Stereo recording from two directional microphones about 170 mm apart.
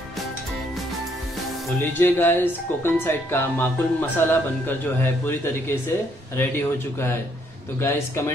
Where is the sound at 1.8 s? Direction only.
15° left (ahead or behind).